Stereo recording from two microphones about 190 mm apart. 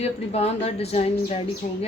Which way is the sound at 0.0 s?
35° left (ahead or behind).